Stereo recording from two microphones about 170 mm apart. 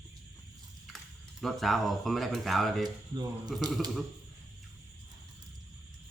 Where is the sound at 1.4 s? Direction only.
Centre (ahead or behind).